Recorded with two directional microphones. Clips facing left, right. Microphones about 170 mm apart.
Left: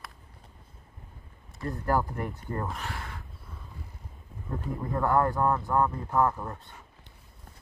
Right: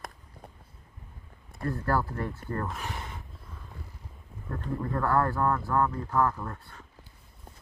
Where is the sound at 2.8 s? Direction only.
20° right (ahead or behind).